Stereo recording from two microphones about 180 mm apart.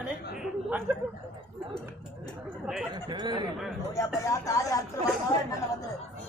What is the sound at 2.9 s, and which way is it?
Speech, 25° right (ahead or behind).